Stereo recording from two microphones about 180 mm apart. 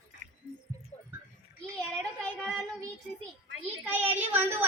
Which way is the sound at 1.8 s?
5° left (ahead or behind).